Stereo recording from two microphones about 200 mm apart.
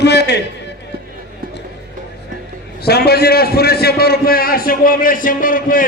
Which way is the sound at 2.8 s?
55° left (ahead or behind).